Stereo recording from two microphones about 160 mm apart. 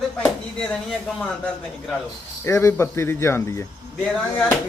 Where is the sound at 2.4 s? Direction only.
15° left (ahead or behind).